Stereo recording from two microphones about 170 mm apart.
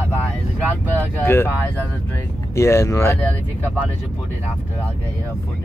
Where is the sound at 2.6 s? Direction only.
15° left (ahead or behind).